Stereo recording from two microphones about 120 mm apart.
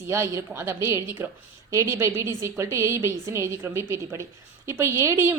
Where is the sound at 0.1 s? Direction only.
20° right (ahead or behind).